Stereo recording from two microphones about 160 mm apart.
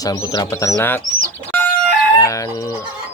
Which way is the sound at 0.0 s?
20° left (ahead or behind).